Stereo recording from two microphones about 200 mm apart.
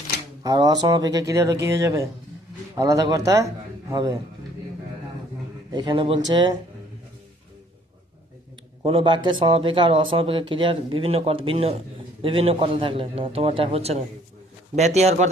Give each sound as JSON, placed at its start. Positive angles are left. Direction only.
{"t": 0.4, "sound": "speech", "side_deg": -20}
{"t": 5.7, "sound": "speech", "side_deg": -25}
{"t": 8.8, "sound": "speech", "side_deg": -25}